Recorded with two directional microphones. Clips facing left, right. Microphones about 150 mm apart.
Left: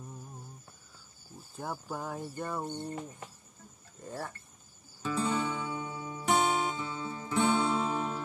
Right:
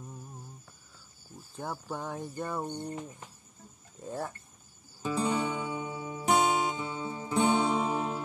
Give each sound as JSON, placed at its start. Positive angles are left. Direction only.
{"t": 1.6, "sound": "speech", "side_deg": 5}
{"t": 2.6, "sound": "speech", "side_deg": -15}
{"t": 4.0, "sound": "speech", "side_deg": 0}
{"t": 5.0, "sound": "music", "side_deg": -15}